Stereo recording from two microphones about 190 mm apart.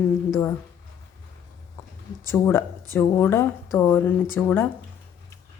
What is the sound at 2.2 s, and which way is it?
Speech, 10° left (ahead or behind).